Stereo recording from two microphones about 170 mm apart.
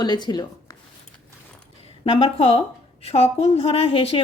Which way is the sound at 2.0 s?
30° left (ahead or behind).